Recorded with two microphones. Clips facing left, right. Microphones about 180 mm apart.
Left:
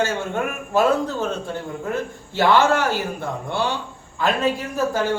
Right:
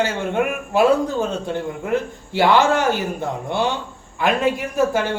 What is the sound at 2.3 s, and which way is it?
Speech, 15° right (ahead or behind).